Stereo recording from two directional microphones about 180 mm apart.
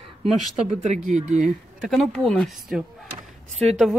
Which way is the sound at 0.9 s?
40° right (ahead or behind).